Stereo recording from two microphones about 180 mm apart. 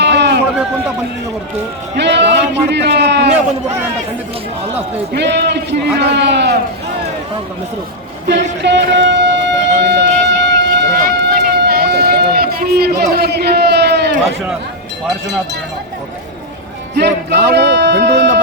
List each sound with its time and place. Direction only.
0.0 s run: 70° right (ahead or behind)
2.0 s a man's voice: 75° right (ahead or behind)
5.1 s a man's voice: 70° right (ahead or behind)
8.6 s a sound: 75° right (ahead or behind)
16.9 s speech: 70° right (ahead or behind)